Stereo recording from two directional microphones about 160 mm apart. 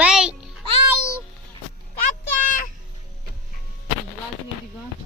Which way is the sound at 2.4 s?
55° left (ahead or behind).